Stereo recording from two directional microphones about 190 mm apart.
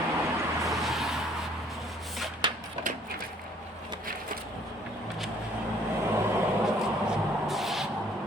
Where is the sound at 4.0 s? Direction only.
50° right (ahead or behind).